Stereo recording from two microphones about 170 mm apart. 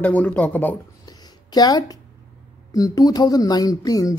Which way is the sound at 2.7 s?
20° left (ahead or behind).